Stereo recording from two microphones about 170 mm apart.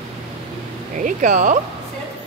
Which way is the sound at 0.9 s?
50° right (ahead or behind).